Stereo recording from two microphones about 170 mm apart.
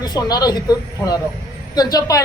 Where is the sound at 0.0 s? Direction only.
25° left (ahead or behind).